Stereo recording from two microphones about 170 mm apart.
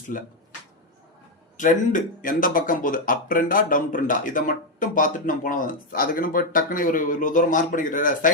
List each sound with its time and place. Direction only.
0.1 s speech: 50° left (ahead or behind)
1.5 s speech: 50° left (ahead or behind)